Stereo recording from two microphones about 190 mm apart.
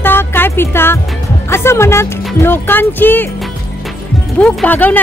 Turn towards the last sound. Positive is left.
turn(degrees=10)  # may be behind; listen again after turning